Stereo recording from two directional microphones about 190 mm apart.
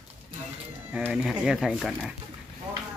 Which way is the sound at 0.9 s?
5° right (ahead or behind).